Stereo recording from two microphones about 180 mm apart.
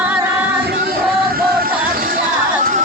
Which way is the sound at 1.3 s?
55° right (ahead or behind).